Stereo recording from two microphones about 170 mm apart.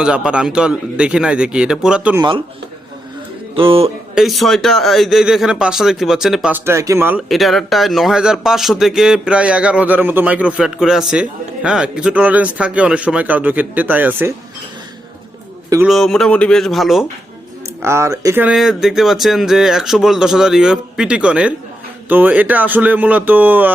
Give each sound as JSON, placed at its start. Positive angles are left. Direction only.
{"t": 0.0, "sound": "a man's voice", "side_deg": -5}
{"t": 3.5, "sound": "speech", "side_deg": -30}
{"t": 4.1, "sound": "a man's voice", "side_deg": 0}
{"t": 7.3, "sound": "a man's voice", "side_deg": 0}
{"t": 15.9, "sound": "a man's voice", "side_deg": 0}
{"t": 17.8, "sound": "a man's voice", "side_deg": -15}
{"t": 18.4, "sound": "a man's voice", "side_deg": -5}